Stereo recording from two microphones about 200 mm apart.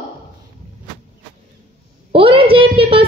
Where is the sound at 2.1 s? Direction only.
30° right (ahead or behind).